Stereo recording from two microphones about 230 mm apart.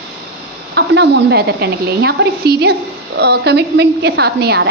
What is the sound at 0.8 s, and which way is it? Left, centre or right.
Speech, right.